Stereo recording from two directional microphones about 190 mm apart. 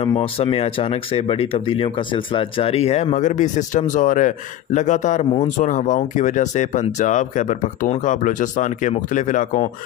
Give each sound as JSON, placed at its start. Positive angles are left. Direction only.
{"t": 0.0, "sound": "speech", "side_deg": 30}